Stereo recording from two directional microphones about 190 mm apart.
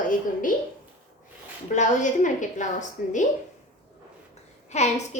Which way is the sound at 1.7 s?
40° left (ahead or behind).